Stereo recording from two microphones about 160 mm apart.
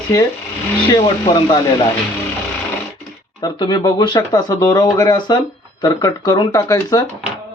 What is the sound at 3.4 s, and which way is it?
Speech, 25° left (ahead or behind).